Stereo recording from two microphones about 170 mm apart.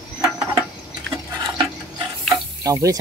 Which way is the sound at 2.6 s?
20° right (ahead or behind).